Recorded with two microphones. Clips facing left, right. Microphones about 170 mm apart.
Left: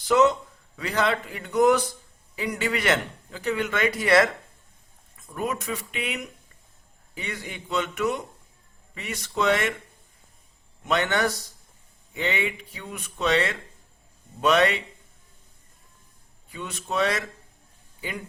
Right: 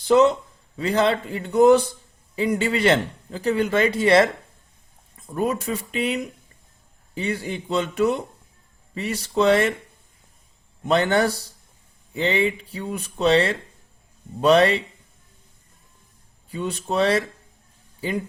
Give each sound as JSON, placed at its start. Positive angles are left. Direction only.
{"t": 0.0, "sound": "a man's voice", "side_deg": -30}
{"t": 10.8, "sound": "speech", "side_deg": -35}
{"t": 16.5, "sound": "speech", "side_deg": -30}